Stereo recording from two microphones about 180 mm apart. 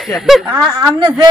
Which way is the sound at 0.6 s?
20° right (ahead or behind).